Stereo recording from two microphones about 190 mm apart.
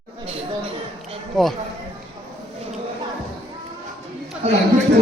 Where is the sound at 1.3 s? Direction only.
Centre (ahead or behind).